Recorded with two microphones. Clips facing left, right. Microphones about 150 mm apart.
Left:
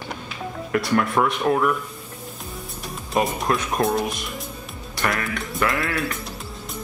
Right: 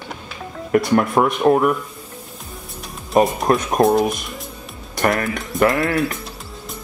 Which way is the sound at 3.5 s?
40° right (ahead or behind).